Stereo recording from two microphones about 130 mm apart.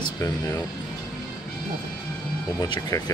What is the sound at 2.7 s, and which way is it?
Speech, 30° left (ahead or behind).